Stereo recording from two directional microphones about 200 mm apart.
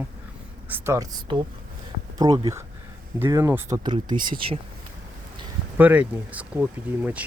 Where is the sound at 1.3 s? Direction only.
25° right (ahead or behind).